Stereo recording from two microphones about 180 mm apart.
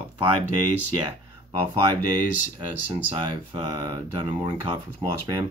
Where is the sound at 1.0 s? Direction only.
20° right (ahead or behind).